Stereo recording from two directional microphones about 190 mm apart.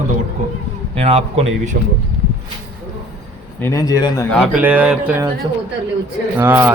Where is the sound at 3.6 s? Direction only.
15° left (ahead or behind).